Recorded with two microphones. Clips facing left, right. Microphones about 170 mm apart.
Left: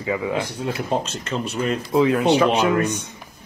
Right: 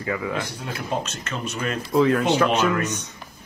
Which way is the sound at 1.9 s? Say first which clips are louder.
Left 2 dB; 15° left (ahead or behind).